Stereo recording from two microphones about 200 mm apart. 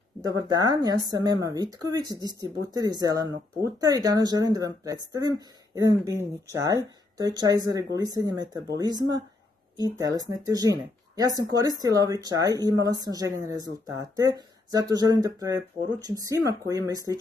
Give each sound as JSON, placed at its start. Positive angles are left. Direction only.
{"t": 0.4, "sound": "speech", "side_deg": -20}
{"t": 10.4, "sound": "speech", "side_deg": -15}